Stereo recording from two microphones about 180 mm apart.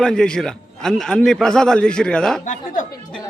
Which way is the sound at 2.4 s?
45° left (ahead or behind).